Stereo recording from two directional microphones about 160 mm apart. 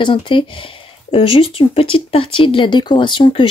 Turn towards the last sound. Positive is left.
turn(degrees=30)  # may be behind; listen again after turning